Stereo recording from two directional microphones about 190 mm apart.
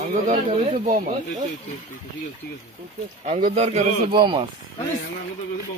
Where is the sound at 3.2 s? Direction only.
40° right (ahead or behind).